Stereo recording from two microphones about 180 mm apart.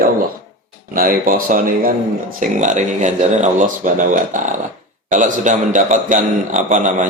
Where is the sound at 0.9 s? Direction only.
50° right (ahead or behind).